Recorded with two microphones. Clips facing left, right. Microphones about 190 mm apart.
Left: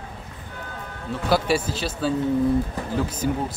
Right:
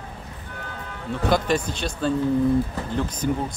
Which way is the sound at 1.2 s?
5° left (ahead or behind).